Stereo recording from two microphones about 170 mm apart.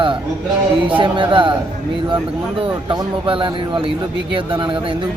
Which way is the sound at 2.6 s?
30° right (ahead or behind).